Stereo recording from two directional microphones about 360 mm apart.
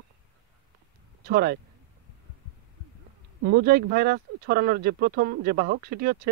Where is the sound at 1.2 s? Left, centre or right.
Right.